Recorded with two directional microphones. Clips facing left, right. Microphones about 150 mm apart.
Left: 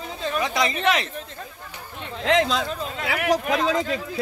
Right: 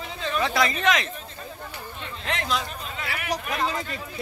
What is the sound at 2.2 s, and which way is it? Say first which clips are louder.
Speech: left 8 dB; 90° left.